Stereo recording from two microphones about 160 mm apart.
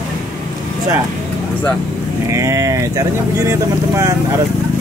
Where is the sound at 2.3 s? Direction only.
20° right (ahead or behind).